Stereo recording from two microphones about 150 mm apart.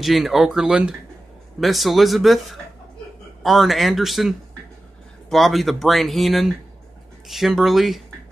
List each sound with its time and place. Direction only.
0.0 s speech: centre (ahead or behind)